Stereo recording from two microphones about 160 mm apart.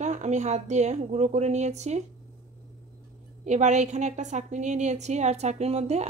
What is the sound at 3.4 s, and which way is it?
A woman's voice, 45° right (ahead or behind).